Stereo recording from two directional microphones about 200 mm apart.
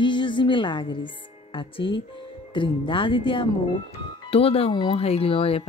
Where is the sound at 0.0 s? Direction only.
25° left (ahead or behind).